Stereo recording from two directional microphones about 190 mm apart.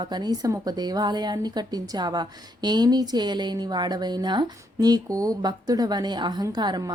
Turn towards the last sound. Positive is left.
turn(degrees=-20)  # may be behind; listen again after turning